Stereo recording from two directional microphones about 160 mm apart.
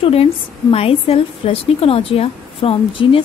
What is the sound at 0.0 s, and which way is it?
A woman's voice, 35° left (ahead or behind).